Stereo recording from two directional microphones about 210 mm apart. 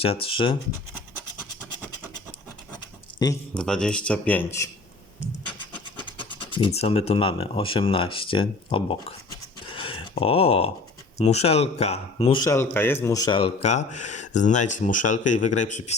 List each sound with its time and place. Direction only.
0.0 s speech: 25° left (ahead or behind)
3.5 s speech: 5° left (ahead or behind)
6.3 s speech: 25° left (ahead or behind)
9.6 s a sound: 25° left (ahead or behind)
11.2 s speech: 30° left (ahead or behind)
12.5 s speech: 10° left (ahead or behind); by 16.0 s 35° left (ahead or behind)